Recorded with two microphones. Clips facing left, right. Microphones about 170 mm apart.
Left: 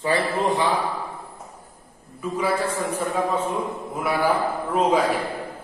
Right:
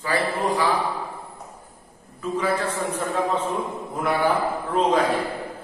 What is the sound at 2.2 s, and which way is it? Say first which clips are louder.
A man's voice: even; 10° left (ahead or behind).